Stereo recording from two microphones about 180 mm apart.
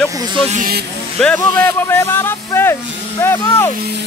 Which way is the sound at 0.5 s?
50° right (ahead or behind).